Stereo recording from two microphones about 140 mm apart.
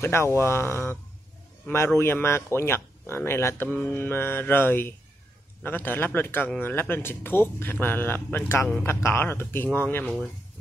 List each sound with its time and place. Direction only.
0.0 s speech: 20° left (ahead or behind)
2.0 s speech: 15° left (ahead or behind)